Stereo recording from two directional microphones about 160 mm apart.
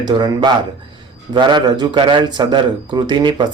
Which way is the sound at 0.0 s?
25° right (ahead or behind).